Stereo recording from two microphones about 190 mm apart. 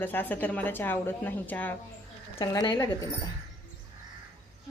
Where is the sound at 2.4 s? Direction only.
20° left (ahead or behind).